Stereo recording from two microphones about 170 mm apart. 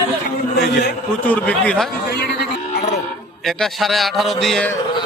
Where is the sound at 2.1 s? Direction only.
70° left (ahead or behind).